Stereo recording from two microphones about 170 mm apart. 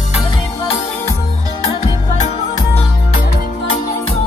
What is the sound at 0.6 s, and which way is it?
Music, 15° left (ahead or behind).